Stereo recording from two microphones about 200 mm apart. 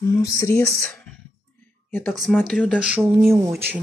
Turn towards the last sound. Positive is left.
turn(degrees=-10)  # may be behind; listen again after turning